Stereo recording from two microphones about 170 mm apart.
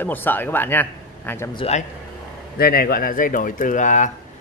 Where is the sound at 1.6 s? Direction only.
40° left (ahead or behind).